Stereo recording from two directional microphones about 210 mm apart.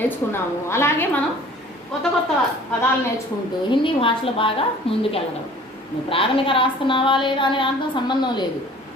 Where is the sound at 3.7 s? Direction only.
25° left (ahead or behind).